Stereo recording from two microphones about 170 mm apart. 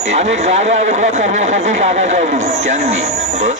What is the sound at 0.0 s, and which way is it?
Speech, 40° right (ahead or behind).